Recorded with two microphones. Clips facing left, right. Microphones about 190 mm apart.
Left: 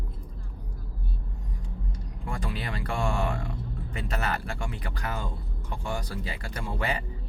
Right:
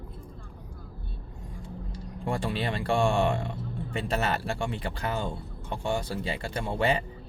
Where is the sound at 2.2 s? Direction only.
30° right (ahead or behind).